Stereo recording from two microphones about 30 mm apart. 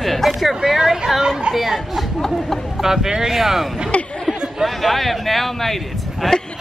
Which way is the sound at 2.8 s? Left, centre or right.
Centre.